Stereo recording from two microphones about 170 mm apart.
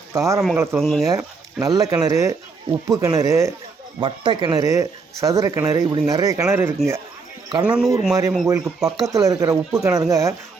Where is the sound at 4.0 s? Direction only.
30° right (ahead or behind); by 9.0 s centre (ahead or behind).